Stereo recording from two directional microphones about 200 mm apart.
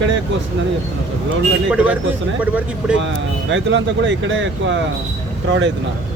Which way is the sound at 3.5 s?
65° right (ahead or behind).